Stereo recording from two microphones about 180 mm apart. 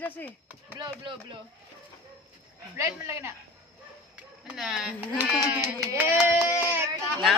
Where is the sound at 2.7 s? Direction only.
15° right (ahead or behind).